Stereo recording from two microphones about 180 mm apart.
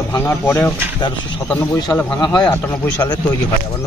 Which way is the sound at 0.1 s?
15° left (ahead or behind).